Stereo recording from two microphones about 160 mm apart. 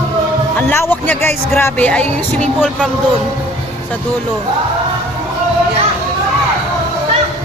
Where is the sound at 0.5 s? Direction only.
15° left (ahead or behind).